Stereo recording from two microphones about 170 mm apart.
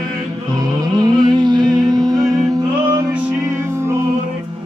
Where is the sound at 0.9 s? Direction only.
25° right (ahead or behind).